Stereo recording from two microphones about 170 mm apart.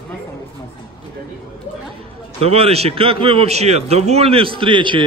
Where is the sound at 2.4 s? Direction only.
35° right (ahead or behind).